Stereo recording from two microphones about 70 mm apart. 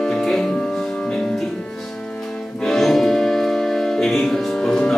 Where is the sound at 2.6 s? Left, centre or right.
Centre.